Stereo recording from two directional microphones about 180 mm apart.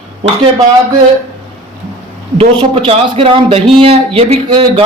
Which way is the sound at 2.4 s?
35° right (ahead or behind).